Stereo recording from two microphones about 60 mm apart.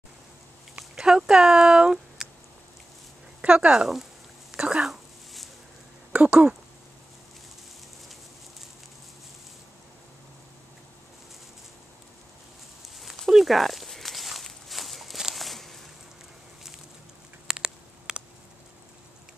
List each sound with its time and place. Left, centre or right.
0.7 s speech: centre
3.3 s speech: centre
4.5 s a sound: centre
6.1 s speech: right
12.8 s walk: centre
17.5 s a sound: centre